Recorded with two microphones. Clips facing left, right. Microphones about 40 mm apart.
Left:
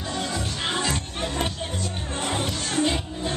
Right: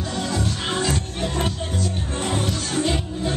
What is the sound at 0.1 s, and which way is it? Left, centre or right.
Music, centre.